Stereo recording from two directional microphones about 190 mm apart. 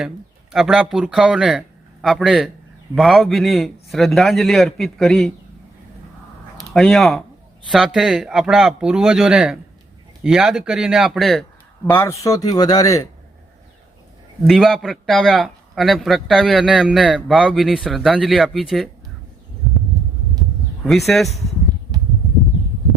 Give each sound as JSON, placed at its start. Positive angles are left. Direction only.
{"t": 0.5, "sound": "a man's voice", "side_deg": 0}
{"t": 6.7, "sound": "a man's voice", "side_deg": 0}
{"t": 11.9, "sound": "speech", "side_deg": 15}
{"t": 14.4, "sound": "a man's voice", "side_deg": 0}
{"t": 20.8, "sound": "a man's voice", "side_deg": 0}